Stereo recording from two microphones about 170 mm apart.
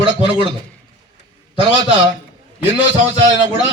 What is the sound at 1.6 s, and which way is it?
Speech, 30° right (ahead or behind).